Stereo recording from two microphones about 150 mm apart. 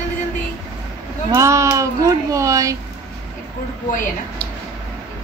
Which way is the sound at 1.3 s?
20° right (ahead or behind).